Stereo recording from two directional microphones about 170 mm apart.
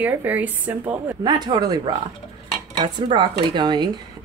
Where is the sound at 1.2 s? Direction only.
25° right (ahead or behind).